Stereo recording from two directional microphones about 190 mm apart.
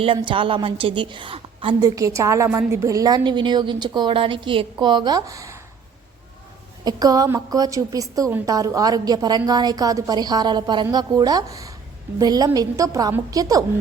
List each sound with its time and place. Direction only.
0.0 s a woman's voice: 25° right (ahead or behind)
6.8 s a woman's voice: 20° right (ahead or behind)